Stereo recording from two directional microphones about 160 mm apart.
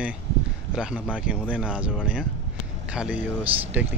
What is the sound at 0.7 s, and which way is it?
Speech, 5° right (ahead or behind).